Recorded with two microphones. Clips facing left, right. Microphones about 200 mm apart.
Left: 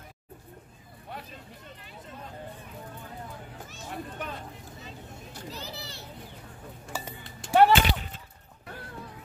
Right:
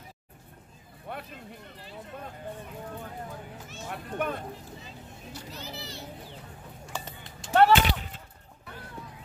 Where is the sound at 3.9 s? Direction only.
55° right (ahead or behind).